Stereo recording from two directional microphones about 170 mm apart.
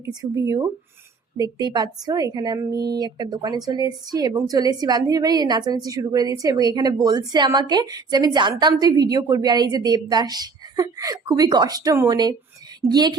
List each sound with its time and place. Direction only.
0.0 s a woman's voice: 20° right (ahead or behind)